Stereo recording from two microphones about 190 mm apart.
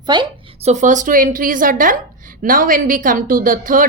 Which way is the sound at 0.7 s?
40° right (ahead or behind).